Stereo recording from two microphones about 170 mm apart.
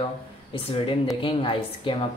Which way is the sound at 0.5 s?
30° left (ahead or behind).